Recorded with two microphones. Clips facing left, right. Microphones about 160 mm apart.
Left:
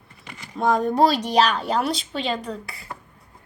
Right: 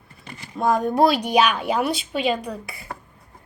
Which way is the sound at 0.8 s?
10° right (ahead or behind).